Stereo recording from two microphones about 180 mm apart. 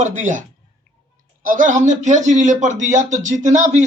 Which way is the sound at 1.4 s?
45° right (ahead or behind).